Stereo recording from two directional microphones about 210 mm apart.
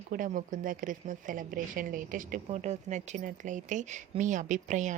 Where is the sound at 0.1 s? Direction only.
40° right (ahead or behind).